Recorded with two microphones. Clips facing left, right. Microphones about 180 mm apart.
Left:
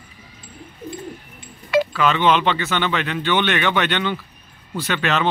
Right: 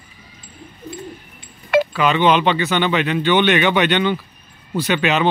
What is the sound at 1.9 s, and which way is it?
Speech, 5° right (ahead or behind).